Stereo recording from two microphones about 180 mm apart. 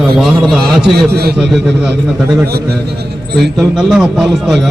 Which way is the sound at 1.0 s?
60° right (ahead or behind).